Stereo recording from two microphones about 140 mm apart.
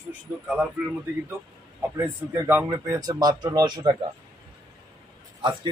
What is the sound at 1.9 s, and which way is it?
Speech, 20° right (ahead or behind).